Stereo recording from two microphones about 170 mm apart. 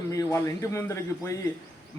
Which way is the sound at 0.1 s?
15° left (ahead or behind).